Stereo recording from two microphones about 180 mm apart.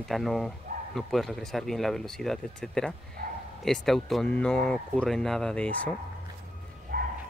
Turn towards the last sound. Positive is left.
turn(degrees=-50)  # may be behind; listen again after turning